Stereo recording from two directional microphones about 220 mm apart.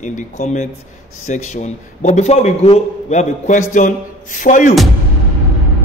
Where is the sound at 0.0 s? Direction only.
35° left (ahead or behind).